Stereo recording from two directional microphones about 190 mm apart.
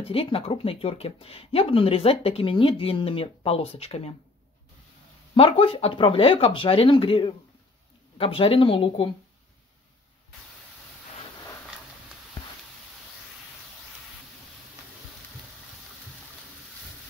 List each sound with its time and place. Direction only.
0.0 s speech: 30° left (ahead or behind)
5.3 s speech: 30° left (ahead or behind)